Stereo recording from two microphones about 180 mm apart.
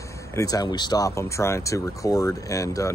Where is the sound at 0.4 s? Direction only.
20° left (ahead or behind).